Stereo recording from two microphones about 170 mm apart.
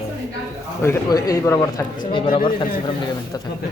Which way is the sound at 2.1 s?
30° left (ahead or behind).